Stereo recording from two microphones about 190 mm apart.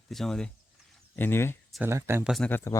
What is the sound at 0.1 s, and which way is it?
Speech, centre (ahead or behind).